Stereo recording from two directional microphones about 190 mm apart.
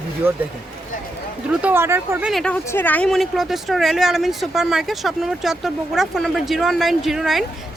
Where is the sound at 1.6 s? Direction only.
10° right (ahead or behind).